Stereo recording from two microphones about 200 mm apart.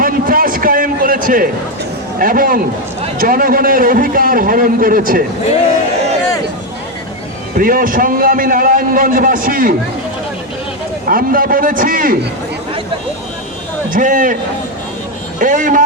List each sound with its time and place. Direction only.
0.0 s a sound: 45° right (ahead or behind)
2.1 s a man's voice: 45° right (ahead or behind)
7.5 s a man's voice: 45° right (ahead or behind)
11.1 s a man's voice: 45° right (ahead or behind)
13.9 s a man's voice: 40° right (ahead or behind)
15.4 s a man's voice: 40° right (ahead or behind)